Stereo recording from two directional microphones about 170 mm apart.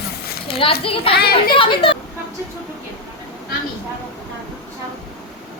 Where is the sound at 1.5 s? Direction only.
30° left (ahead or behind).